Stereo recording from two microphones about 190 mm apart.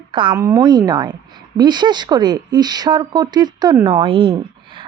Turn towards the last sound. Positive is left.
turn(degrees=-25)  # may be behind; listen again after turning